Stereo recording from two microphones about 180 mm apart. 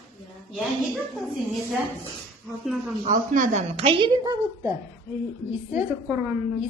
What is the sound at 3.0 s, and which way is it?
Speech, 45° right (ahead or behind).